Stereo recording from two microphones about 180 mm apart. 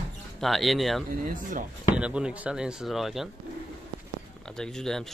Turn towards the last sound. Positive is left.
turn(degrees=0)  # may be behind; listen again after turning